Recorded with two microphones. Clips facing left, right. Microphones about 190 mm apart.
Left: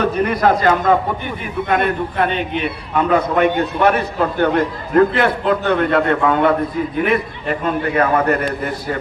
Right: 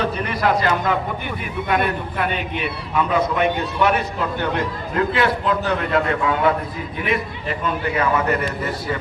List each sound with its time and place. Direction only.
0.0 s a man's voice: 45° left (ahead or behind)